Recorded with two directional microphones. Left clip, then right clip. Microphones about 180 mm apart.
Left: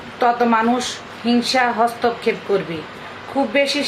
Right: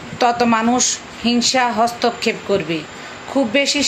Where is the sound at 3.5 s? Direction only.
55° right (ahead or behind).